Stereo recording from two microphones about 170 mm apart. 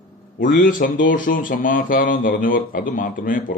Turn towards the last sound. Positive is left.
turn(degrees=55)  # may be behind; listen again after turning